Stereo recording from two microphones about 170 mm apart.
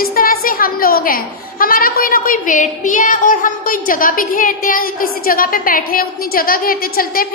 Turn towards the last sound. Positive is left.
turn(degrees=60)  # may be behind; listen again after turning